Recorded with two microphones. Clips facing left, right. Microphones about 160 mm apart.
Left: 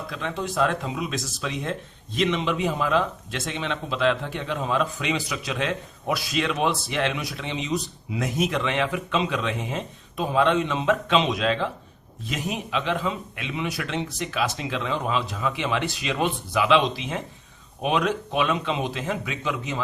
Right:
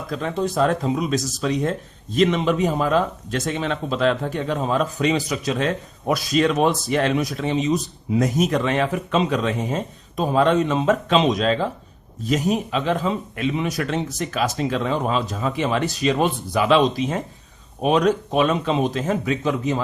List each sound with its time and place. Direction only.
0.1 s speech: 40° right (ahead or behind)